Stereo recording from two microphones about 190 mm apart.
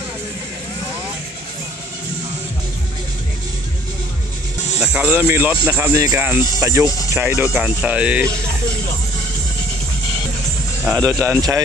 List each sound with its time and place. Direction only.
4.8 s speech: 5° right (ahead or behind)
10.9 s speech: 15° right (ahead or behind)